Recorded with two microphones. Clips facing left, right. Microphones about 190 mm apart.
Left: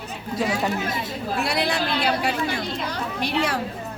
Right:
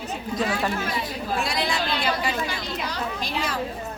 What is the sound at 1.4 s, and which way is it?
A woman's voice, 65° left (ahead or behind).